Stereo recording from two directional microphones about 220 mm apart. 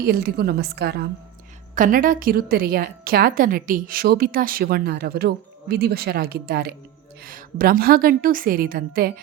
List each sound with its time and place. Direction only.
0.0 s a woman's voice: 45° right (ahead or behind)